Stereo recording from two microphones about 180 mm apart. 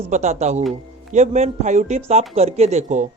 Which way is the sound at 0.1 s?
40° right (ahead or behind).